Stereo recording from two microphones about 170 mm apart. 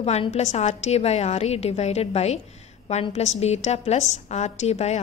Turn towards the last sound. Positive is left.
turn(degrees=40)  # may be behind; listen again after turning